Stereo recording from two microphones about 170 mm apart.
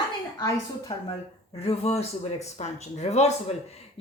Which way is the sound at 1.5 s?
35° left (ahead or behind).